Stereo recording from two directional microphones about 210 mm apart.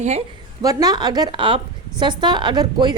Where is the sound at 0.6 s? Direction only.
15° right (ahead or behind).